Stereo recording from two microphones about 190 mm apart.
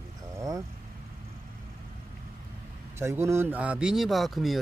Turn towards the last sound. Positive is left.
turn(degrees=0)  # may be behind; listen again after turning